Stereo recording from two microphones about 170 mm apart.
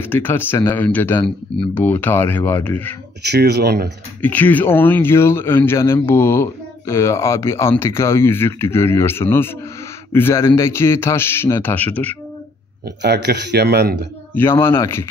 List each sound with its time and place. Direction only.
0.0 s speech: 10° left (ahead or behind)
3.2 s speech: 75° right (ahead or behind)
4.2 s speech: 10° left (ahead or behind)
13.0 s speech: 75° right (ahead or behind)
14.3 s speech: 15° left (ahead or behind)